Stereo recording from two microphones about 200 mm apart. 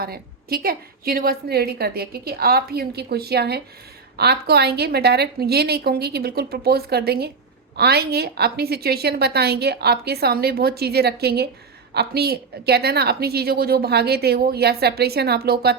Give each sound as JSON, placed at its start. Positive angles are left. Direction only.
{"t": 0.0, "sound": "a woman's voice", "side_deg": -50}